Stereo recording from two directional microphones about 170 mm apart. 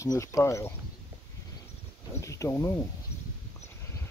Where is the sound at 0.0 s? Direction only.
20° left (ahead or behind).